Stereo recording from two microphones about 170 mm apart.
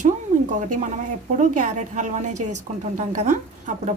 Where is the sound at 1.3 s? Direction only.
50° right (ahead or behind).